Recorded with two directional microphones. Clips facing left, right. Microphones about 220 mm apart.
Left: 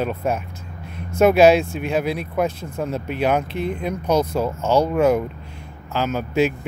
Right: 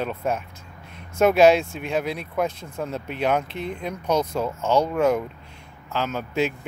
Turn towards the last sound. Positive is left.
turn(degrees=5)  # may be behind; listen again after turning